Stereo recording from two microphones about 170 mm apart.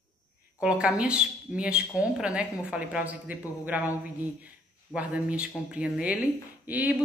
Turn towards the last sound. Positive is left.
turn(degrees=-10)  # may be behind; listen again after turning